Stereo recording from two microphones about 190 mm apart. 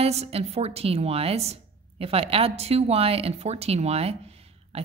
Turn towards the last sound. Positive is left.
turn(degrees=-30)  # may be behind; listen again after turning